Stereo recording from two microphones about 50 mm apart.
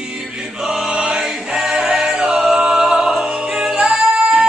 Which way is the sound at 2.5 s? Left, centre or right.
Centre.